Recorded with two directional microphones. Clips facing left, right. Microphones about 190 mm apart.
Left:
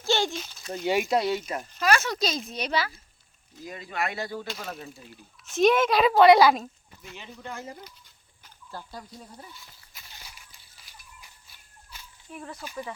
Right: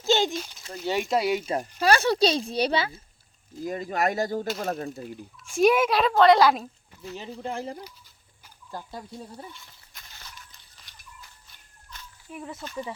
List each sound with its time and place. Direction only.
0.0 s a sound: 20° right (ahead or behind)
0.3 s speech: 10° right (ahead or behind)
0.9 s a woman's voice: 10° left (ahead or behind)
1.1 s speech: 10° right (ahead or behind)
1.4 s a woman's voice: 30° right (ahead or behind)
3.6 s speech: 45° right (ahead or behind)
5.5 s speech: 10° right (ahead or behind)
6.0 s a woman's voice: 10° left (ahead or behind)
7.0 s a woman's voice: 35° right (ahead or behind)
9.9 s walk: 10° left (ahead or behind)
12.3 s speech: 5° right (ahead or behind)